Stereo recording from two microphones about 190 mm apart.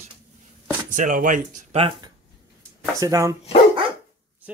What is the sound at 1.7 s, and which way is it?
Speech, 30° right (ahead or behind).